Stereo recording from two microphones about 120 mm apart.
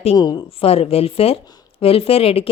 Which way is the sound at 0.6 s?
55° left (ahead or behind).